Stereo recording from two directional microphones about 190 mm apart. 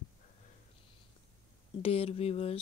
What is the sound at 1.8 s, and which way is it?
Speech, 30° left (ahead or behind).